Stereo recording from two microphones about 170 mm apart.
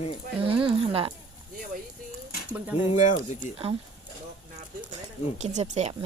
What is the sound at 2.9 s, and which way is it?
Speech, 45° left (ahead or behind).